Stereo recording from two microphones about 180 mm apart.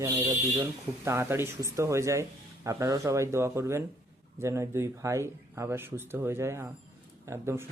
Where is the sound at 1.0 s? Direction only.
15° right (ahead or behind).